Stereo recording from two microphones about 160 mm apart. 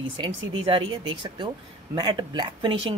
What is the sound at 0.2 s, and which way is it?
Speech, 30° right (ahead or behind).